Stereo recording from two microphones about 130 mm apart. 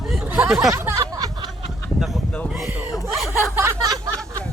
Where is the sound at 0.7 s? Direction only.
25° right (ahead or behind).